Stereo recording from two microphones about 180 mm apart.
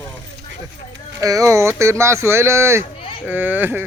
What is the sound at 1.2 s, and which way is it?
Speech, 20° right (ahead or behind).